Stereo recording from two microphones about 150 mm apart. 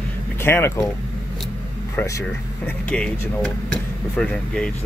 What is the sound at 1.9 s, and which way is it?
Speech, 20° left (ahead or behind).